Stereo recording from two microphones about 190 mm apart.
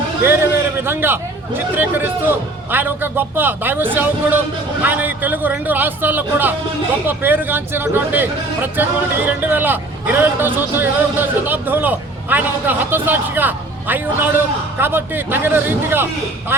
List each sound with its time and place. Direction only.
0.2 s speech: 10° right (ahead or behind)